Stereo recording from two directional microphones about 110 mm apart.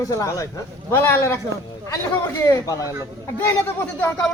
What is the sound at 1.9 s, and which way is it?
A man's voice, 25° left (ahead or behind).